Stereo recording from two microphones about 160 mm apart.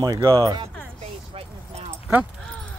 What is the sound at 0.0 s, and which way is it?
Speech, 25° right (ahead or behind).